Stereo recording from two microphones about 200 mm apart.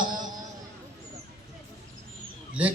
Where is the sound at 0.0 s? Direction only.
20° right (ahead or behind).